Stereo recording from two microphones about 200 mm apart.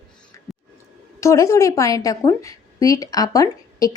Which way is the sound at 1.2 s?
15° left (ahead or behind).